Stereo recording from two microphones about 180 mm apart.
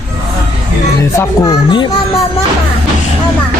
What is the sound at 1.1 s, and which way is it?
Speech, 20° left (ahead or behind).